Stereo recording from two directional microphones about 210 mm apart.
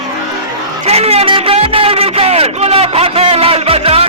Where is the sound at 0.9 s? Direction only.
30° right (ahead or behind).